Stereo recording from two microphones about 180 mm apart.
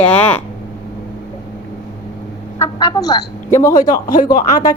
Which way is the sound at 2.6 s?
20° left (ahead or behind).